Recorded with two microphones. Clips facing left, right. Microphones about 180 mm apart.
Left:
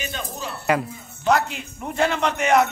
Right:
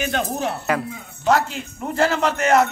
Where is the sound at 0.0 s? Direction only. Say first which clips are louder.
Right 8 dB; 75° right (ahead or behind).